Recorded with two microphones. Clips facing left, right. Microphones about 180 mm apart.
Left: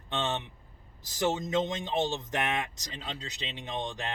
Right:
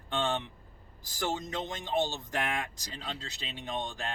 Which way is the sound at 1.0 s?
20° left (ahead or behind).